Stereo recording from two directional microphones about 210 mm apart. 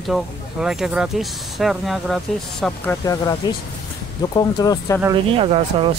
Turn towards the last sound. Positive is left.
turn(degrees=-25)  # may be behind; listen again after turning